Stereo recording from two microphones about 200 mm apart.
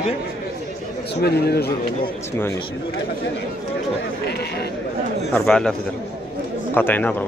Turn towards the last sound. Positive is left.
turn(degrees=10)  # may be behind; listen again after turning